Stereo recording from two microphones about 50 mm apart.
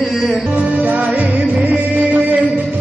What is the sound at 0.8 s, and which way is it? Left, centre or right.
Music, right.